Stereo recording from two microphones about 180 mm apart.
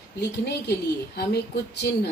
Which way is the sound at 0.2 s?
70° left (ahead or behind).